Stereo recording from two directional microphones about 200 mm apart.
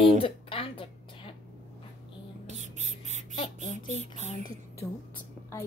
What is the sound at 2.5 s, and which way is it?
Rodents, 35° right (ahead or behind).